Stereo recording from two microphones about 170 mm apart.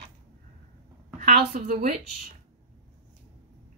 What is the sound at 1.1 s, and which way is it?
Speech, 50° right (ahead or behind).